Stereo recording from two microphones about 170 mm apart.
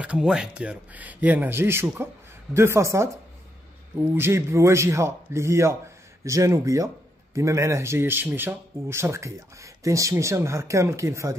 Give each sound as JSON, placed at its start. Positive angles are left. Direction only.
{"t": 0.0, "sound": "a man's voice", "side_deg": -5}
{"t": 4.1, "sound": "a man's voice", "side_deg": -15}